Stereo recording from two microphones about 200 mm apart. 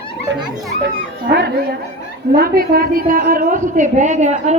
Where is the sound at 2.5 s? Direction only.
50° right (ahead or behind).